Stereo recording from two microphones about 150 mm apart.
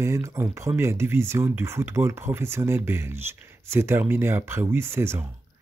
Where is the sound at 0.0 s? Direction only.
20° right (ahead or behind).